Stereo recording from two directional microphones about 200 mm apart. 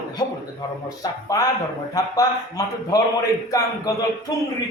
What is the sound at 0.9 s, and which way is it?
Speech, 15° left (ahead or behind).